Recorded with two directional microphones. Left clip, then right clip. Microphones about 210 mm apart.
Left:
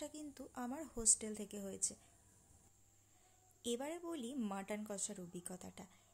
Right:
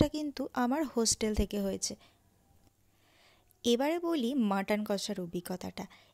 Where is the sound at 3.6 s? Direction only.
35° right (ahead or behind).